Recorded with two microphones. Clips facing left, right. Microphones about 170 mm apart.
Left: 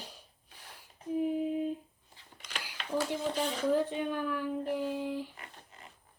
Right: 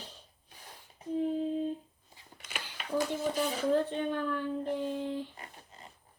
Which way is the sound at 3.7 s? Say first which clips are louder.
Even; 10° left (ahead or behind).